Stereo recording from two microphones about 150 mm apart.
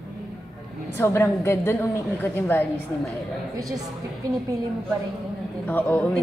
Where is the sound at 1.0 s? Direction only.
15° left (ahead or behind).